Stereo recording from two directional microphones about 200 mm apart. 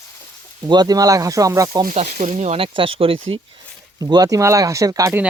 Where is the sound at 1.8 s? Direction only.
35° right (ahead or behind); by 5.3 s 10° right (ahead or behind).